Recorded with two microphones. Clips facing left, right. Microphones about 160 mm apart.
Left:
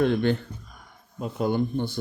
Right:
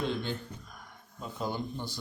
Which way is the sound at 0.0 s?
60° left (ahead or behind).